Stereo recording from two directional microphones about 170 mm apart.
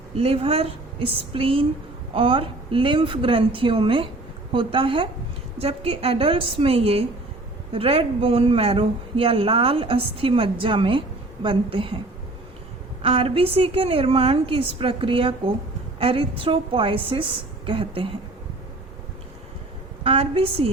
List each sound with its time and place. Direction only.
0.2 s a woman's voice: 35° right (ahead or behind)
13.0 s a woman's voice: 35° right (ahead or behind)
20.1 s a woman's voice: 35° right (ahead or behind)